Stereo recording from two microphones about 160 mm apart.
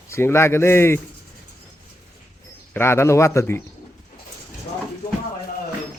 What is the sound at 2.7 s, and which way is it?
Speech, 15° left (ahead or behind).